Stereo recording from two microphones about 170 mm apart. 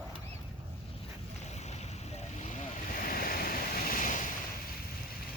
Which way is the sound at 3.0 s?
55° left (ahead or behind).